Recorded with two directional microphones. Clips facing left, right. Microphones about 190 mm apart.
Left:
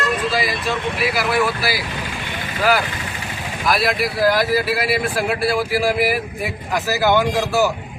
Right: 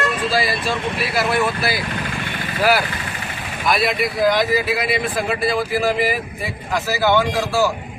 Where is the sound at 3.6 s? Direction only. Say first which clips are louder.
Even; centre (ahead or behind).